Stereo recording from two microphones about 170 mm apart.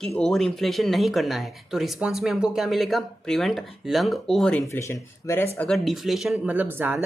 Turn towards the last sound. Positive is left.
turn(degrees=-10)  # may be behind; listen again after turning